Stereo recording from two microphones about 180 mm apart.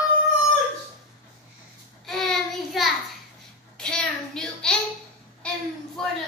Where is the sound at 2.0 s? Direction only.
Centre (ahead or behind).